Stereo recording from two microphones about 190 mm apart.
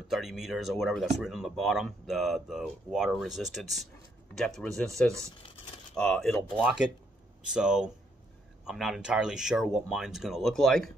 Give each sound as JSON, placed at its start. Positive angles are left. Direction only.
{"t": 0.1, "sound": "speech", "side_deg": 0}